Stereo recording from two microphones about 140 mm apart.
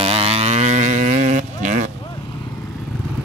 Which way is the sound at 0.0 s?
45° right (ahead or behind).